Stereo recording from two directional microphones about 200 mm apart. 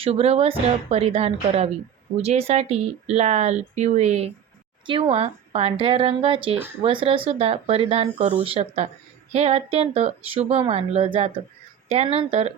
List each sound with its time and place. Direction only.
0.0 s speech: 30° right (ahead or behind)